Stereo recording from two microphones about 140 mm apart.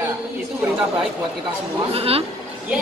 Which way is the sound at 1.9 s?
45° right (ahead or behind).